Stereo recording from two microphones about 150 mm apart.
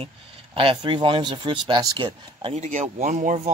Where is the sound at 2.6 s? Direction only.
55° right (ahead or behind).